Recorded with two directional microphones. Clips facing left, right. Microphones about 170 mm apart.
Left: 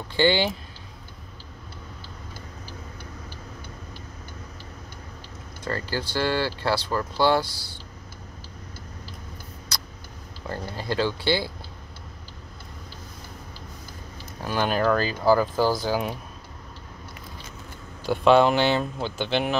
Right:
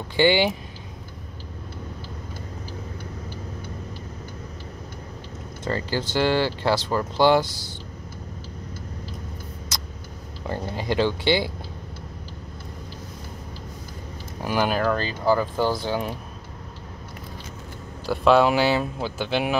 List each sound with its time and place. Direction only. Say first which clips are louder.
0.1 s speech: right 2 dB; 15° right (ahead or behind)
5.6 s speech: right 3 dB; 20° right (ahead or behind)
10.5 s speech: right 3 dB; 15° right (ahead or behind)
14.4 s speech: right 1 dB; 10° right (ahead or behind); by 16.2 s 5° left (ahead or behind)
18.0 s speech: even; centre (ahead or behind)